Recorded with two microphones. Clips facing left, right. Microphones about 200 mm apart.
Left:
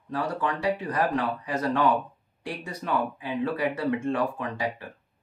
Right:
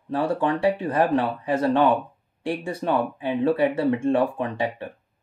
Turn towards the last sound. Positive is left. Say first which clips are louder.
# right 5 dB
turn(degrees=-25)  # may be behind; listen again after turning